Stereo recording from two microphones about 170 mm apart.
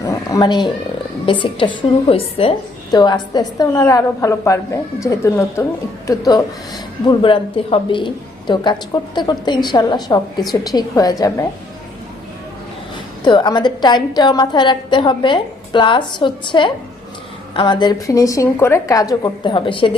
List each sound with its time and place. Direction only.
0.0 s a sound: 20° left (ahead or behind)
1.2 s a woman's voice: 30° left (ahead or behind)
13.2 s a woman's voice: 25° left (ahead or behind)